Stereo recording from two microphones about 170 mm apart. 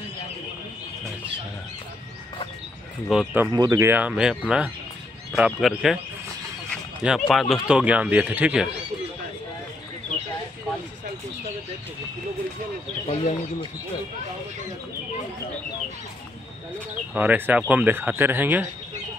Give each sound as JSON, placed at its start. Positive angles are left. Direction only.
{"t": 3.1, "sound": "speech", "side_deg": -5}
{"t": 3.5, "sound": "speech", "side_deg": -20}
{"t": 7.0, "sound": "speech", "side_deg": -5}
{"t": 13.2, "sound": "speech", "side_deg": 35}
{"t": 17.1, "sound": "speech", "side_deg": -10}